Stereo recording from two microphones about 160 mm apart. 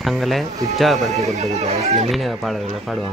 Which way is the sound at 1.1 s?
45° right (ahead or behind).